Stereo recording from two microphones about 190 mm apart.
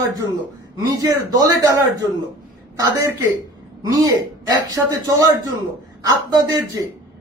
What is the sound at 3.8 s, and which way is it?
A man's voice, 20° right (ahead or behind).